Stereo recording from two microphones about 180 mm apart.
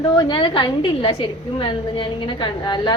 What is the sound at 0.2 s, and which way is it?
A woman's voice, 25° left (ahead or behind).